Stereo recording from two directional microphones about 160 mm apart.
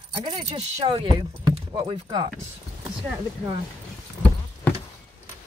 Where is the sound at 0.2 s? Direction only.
30° right (ahead or behind).